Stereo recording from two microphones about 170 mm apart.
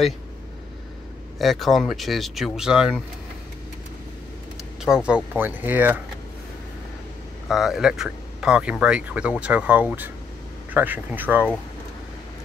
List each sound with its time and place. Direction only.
1.4 s speech: centre (ahead or behind)
4.8 s speech: 5° right (ahead or behind)
7.4 s speech: centre (ahead or behind)